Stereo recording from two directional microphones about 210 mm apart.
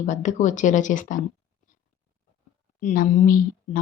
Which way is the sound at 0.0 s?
35° left (ahead or behind).